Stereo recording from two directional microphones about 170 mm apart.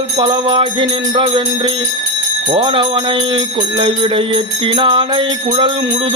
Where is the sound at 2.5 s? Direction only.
30° right (ahead or behind).